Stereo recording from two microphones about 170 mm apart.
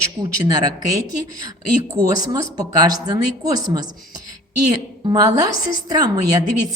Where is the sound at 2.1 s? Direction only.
25° right (ahead or behind).